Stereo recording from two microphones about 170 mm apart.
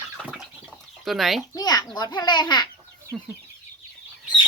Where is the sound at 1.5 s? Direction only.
25° left (ahead or behind).